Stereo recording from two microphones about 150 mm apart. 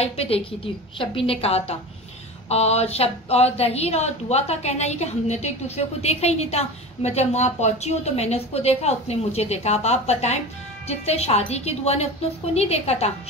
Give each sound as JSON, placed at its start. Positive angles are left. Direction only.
{"t": 0.0, "sound": "a woman's voice", "side_deg": 40}